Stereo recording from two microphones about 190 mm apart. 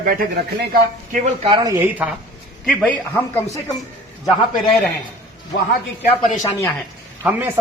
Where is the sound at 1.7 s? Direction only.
10° right (ahead or behind).